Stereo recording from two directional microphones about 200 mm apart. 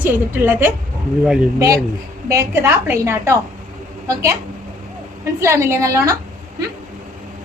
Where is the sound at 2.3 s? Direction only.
15° right (ahead or behind).